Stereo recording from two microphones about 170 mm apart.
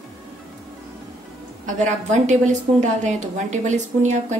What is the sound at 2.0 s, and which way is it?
A woman's voice, 45° right (ahead or behind).